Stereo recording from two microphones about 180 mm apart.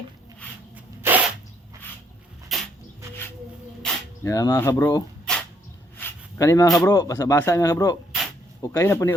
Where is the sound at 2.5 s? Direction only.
Centre (ahead or behind).